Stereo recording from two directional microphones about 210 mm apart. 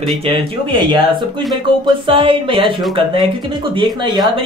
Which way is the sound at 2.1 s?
25° right (ahead or behind).